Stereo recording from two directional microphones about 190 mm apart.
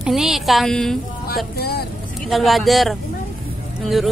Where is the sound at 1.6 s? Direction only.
55° left (ahead or behind).